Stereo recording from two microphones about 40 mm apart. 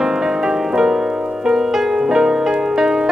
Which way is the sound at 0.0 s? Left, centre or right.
Centre.